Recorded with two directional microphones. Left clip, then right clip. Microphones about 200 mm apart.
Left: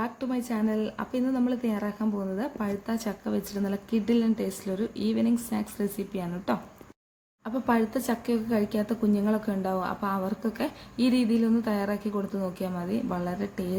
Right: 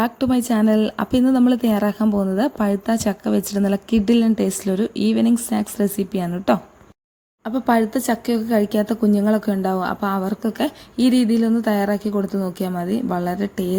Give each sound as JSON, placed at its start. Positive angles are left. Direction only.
{"t": 0.0, "sound": "a woman's voice", "side_deg": -45}